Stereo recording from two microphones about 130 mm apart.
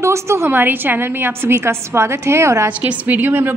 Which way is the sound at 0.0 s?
20° right (ahead or behind).